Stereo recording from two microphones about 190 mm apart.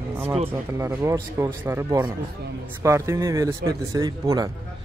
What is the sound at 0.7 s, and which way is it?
Speech, 15° right (ahead or behind).